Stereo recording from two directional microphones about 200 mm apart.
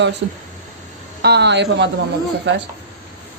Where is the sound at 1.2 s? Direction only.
55° right (ahead or behind).